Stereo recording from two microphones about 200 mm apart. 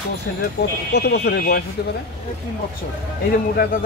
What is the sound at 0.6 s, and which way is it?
Speech, 55° left (ahead or behind).